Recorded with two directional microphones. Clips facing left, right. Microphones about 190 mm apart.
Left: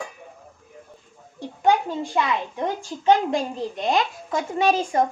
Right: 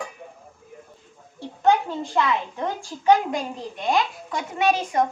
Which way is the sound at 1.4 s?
15° left (ahead or behind).